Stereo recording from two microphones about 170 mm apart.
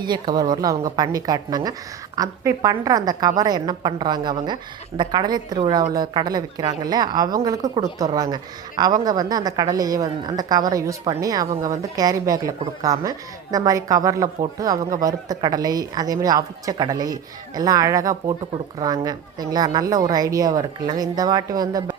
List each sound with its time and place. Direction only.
0.0 s a woman's voice: 25° right (ahead or behind)